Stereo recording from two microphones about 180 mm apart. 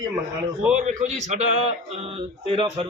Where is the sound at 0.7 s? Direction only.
40° right (ahead or behind).